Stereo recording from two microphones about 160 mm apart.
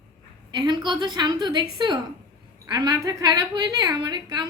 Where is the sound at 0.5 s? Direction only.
25° right (ahead or behind).